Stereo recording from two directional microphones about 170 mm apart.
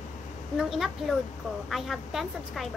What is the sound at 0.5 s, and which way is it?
A woman's voice, centre (ahead or behind).